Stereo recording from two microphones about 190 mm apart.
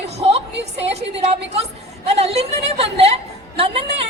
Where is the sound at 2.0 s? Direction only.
35° right (ahead or behind).